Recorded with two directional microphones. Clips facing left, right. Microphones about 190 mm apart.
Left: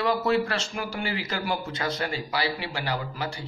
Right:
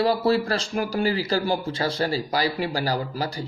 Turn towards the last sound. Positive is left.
turn(degrees=-35)  # may be behind; listen again after turning